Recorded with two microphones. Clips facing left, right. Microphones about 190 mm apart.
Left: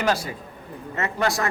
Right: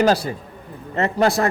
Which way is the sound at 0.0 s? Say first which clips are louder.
Right 6 dB; 35° right (ahead or behind).